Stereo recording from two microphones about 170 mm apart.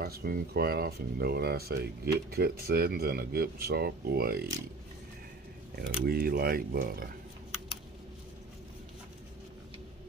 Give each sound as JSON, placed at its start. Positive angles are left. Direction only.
{"t": 0.0, "sound": "speech", "side_deg": -65}
{"t": 5.8, "sound": "speech", "side_deg": -65}